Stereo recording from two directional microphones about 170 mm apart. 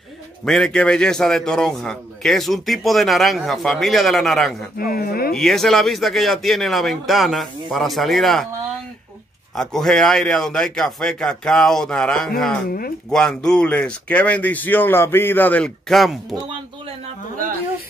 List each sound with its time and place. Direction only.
0.5 s a man's voice: 5° left (ahead or behind)
4.7 s speech: 60° left (ahead or behind)
5.3 s a man's voice: centre (ahead or behind)
9.6 s a man's voice: 5° left (ahead or behind)